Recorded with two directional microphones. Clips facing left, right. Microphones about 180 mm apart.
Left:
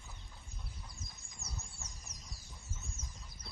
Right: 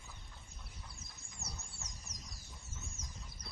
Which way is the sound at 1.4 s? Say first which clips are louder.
Right 2 dB; 35° right (ahead or behind).